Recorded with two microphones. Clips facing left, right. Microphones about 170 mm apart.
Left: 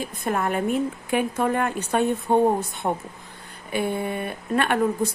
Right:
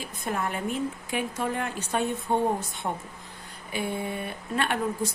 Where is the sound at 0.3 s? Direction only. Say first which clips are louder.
Left 6 dB; 60° left (ahead or behind).